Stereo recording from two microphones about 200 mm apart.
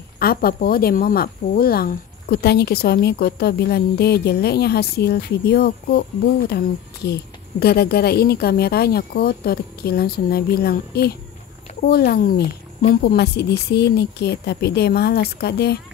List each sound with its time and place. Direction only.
0.2 s a woman's voice: 50° left (ahead or behind)